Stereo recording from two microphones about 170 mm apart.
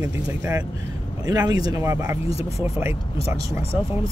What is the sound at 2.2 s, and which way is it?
Speech, 35° left (ahead or behind).